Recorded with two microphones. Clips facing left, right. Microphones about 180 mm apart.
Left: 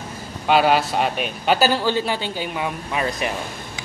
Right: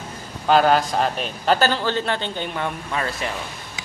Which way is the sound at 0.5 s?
5° left (ahead or behind).